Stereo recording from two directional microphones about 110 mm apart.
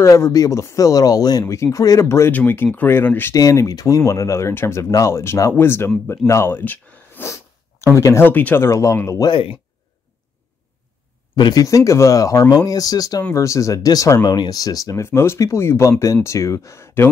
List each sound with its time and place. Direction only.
0.0 s speech: 30° left (ahead or behind)
3.3 s speech: 30° left (ahead or behind)
9.3 s speech: 55° left (ahead or behind)
11.3 s speech: 40° left (ahead or behind); by 17.1 s 20° left (ahead or behind)